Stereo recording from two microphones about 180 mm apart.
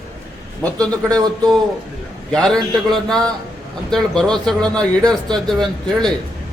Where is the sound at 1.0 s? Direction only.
20° right (ahead or behind).